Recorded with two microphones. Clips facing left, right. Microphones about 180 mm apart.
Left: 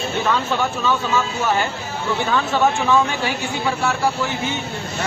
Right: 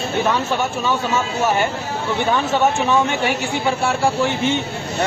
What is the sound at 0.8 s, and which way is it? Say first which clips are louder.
Speech: even; 20° right (ahead or behind).